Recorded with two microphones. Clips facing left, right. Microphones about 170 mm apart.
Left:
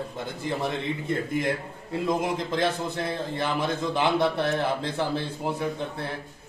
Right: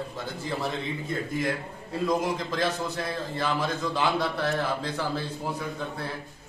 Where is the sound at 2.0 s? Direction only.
20° left (ahead or behind).